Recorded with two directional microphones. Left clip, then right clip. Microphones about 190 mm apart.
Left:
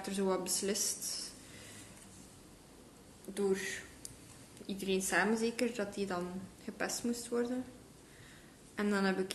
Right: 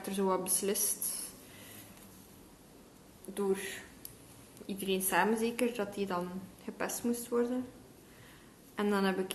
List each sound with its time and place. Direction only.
0.0 s speech: 5° left (ahead or behind)
3.3 s a woman's voice: 15° left (ahead or behind)
8.7 s a woman's voice: 5° left (ahead or behind)